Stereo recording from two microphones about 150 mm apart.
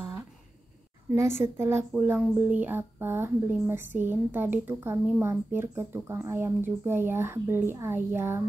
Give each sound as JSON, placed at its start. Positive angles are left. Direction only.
{"t": 1.4, "sound": "speech", "side_deg": -15}